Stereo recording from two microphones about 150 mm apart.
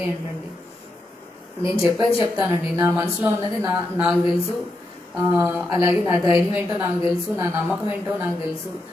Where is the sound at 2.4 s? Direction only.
15° right (ahead or behind).